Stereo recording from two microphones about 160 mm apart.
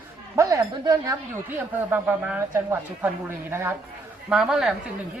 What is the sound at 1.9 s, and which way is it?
A woman's voice, 10° right (ahead or behind).